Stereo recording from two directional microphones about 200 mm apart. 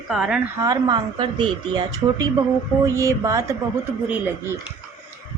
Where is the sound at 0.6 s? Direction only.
20° right (ahead or behind).